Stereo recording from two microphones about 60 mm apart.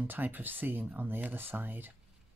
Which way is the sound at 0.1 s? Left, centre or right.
Right.